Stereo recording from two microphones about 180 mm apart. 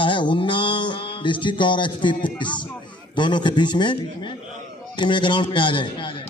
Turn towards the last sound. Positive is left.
turn(degrees=25)  # may be behind; listen again after turning